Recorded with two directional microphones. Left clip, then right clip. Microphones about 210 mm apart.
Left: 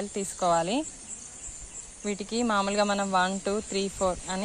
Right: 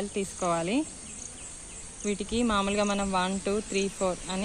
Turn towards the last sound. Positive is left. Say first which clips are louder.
# left 2 dB
turn(degrees=50)  # may be behind; listen again after turning